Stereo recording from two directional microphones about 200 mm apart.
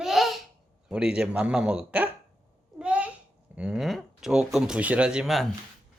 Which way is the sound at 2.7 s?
5° right (ahead or behind).